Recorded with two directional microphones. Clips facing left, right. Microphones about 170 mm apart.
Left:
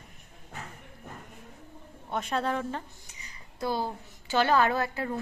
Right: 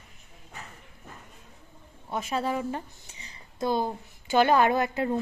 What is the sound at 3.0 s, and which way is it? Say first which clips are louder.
A woman's voice: right 1 dB; 30° right (ahead or behind).